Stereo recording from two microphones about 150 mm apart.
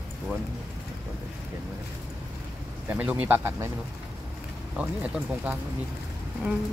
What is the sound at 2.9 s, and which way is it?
Speech, 10° right (ahead or behind).